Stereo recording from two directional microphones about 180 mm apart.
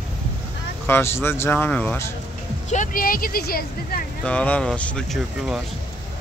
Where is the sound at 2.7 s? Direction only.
45° left (ahead or behind).